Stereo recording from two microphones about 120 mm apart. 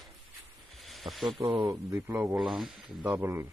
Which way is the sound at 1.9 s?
20° right (ahead or behind).